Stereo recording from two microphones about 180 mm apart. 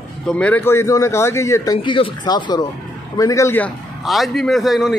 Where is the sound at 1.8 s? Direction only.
30° left (ahead or behind); by 3.7 s 10° left (ahead or behind).